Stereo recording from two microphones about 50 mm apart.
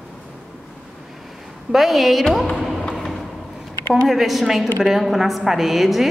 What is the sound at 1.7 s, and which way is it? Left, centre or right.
A woman's voice, centre.